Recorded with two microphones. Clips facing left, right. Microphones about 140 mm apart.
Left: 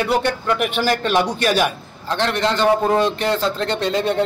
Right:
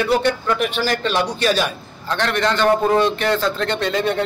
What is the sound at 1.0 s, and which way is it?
Speech, 15° left (ahead or behind).